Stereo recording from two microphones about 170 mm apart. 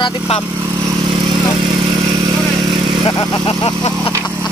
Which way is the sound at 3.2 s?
35° left (ahead or behind).